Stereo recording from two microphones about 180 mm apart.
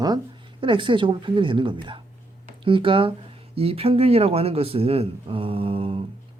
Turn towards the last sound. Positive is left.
turn(degrees=-30)  # may be behind; listen again after turning